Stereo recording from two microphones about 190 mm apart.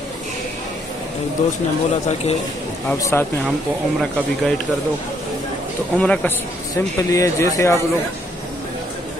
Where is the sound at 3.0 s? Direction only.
10° left (ahead or behind).